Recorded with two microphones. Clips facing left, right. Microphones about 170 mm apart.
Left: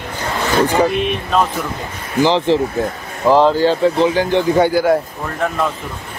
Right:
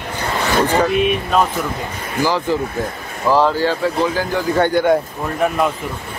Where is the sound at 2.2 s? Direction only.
25° left (ahead or behind).